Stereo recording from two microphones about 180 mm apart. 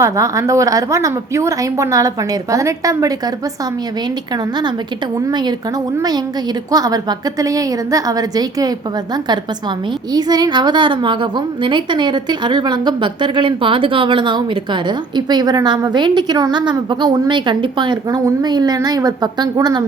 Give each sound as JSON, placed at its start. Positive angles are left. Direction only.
{"t": 0.0, "sound": "a woman's voice", "side_deg": -15}
{"t": 5.2, "sound": "a woman's voice", "side_deg": -25}
{"t": 10.1, "sound": "a woman's voice", "side_deg": -20}